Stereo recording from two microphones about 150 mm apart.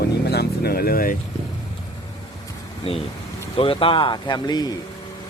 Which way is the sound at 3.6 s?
35° left (ahead or behind).